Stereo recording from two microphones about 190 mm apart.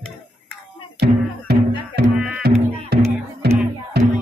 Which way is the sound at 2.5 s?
55° right (ahead or behind).